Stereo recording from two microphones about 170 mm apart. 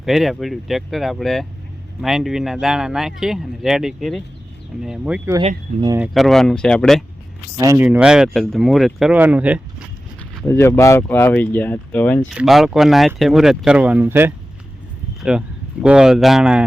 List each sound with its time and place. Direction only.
0.0 s speech: centre (ahead or behind)
7.5 s speech: 20° right (ahead or behind)
7.9 s speech: 5° right (ahead or behind)
10.4 s speech: 15° left (ahead or behind)
12.3 s speech: centre (ahead or behind)